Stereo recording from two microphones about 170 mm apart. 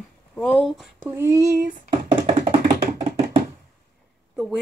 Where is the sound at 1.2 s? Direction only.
20° right (ahead or behind).